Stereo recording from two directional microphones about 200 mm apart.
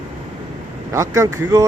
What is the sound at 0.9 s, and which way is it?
Speech, 15° right (ahead or behind).